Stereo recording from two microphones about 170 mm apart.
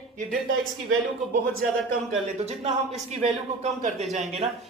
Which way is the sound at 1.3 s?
55° right (ahead or behind).